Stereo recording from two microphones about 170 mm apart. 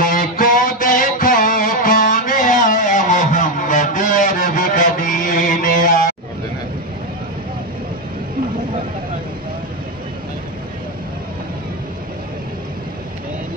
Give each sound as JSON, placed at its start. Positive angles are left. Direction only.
{"t": 0.0, "sound": "music", "side_deg": 55}